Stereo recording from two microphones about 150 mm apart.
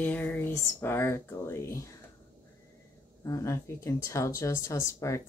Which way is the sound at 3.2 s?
20° left (ahead or behind).